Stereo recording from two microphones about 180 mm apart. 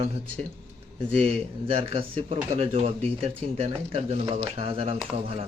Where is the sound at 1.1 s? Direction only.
35° right (ahead or behind).